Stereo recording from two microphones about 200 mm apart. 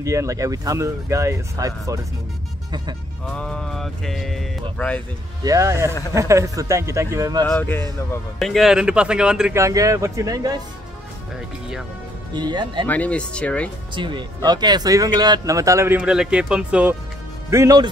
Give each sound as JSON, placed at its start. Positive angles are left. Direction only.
{"t": 0.0, "sound": "speech", "side_deg": -15}
{"t": 3.3, "sound": "speech", "side_deg": 5}
{"t": 5.4, "sound": "speech", "side_deg": -15}
{"t": 7.4, "sound": "speech", "side_deg": 10}
{"t": 9.6, "sound": "speech", "side_deg": -15}
{"t": 12.4, "sound": "speech", "side_deg": -20}
{"t": 12.8, "sound": "speech", "side_deg": 10}
{"t": 13.9, "sound": "speech", "side_deg": -25}
{"t": 17.5, "sound": "speech", "side_deg": -15}